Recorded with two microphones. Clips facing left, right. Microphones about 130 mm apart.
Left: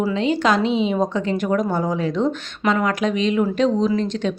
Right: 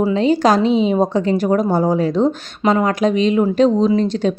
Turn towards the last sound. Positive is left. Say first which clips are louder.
# right 5 dB
turn(degrees=-35)  # may be behind; listen again after turning